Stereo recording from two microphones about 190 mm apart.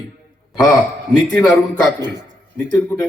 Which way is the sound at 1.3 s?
5° left (ahead or behind).